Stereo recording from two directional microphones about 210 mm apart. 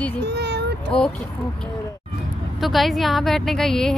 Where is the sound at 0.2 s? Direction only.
50° right (ahead or behind).